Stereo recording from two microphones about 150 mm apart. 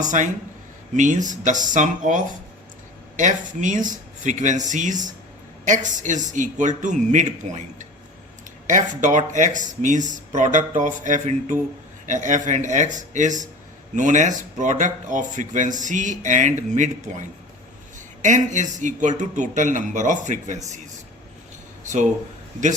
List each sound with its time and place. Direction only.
0.1 s speech: 55° right (ahead or behind)